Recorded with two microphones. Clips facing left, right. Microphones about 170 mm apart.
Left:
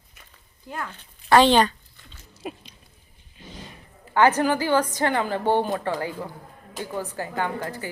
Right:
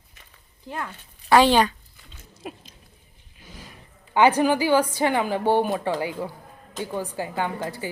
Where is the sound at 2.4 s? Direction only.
Centre (ahead or behind).